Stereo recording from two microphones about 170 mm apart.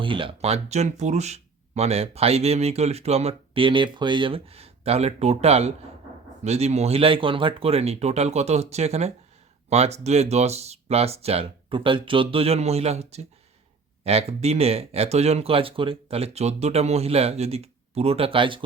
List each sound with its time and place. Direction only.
0.0 s speech: 30° right (ahead or behind)